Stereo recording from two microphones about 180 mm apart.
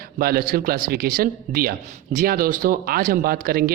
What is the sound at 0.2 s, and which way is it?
Speech, 55° right (ahead or behind).